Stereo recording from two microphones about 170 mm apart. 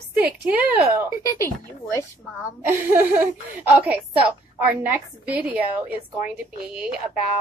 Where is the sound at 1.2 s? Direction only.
20° left (ahead or behind).